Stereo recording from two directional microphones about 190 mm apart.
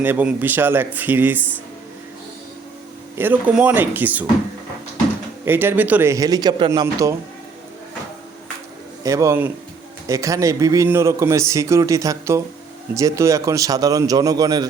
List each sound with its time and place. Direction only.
0.0 s a man's voice: 10° right (ahead or behind)
3.2 s a man's voice: 10° right (ahead or behind)
5.5 s a man's voice: 10° right (ahead or behind)
9.0 s a man's voice: 15° right (ahead or behind)